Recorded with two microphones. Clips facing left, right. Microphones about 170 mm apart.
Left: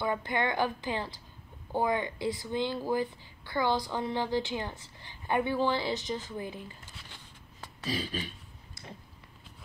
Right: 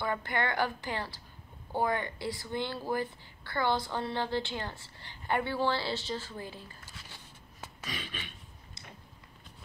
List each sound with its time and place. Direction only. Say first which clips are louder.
0.0 s speech: left 2 dB; 15° left (ahead or behind)
7.8 s beatboxing: left 8 dB; 35° left (ahead or behind)